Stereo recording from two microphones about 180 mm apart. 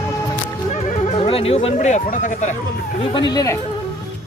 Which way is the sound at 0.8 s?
40° left (ahead or behind).